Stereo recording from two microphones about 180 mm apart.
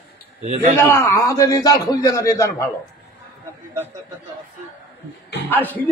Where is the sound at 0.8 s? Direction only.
15° left (ahead or behind).